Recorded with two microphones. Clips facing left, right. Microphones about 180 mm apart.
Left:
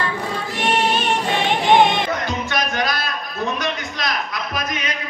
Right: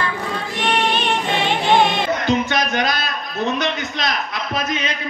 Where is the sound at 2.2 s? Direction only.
20° right (ahead or behind).